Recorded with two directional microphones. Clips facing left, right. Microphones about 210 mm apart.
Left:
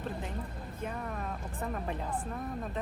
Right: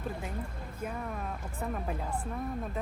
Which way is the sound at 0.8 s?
Centre (ahead or behind).